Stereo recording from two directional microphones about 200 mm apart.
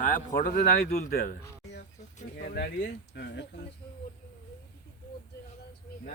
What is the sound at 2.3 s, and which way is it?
A man's voice, 50° left (ahead or behind).